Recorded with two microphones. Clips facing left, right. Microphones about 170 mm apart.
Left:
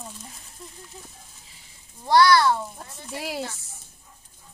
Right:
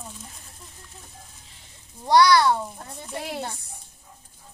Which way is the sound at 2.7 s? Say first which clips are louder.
Right 2 dB; 5° left (ahead or behind).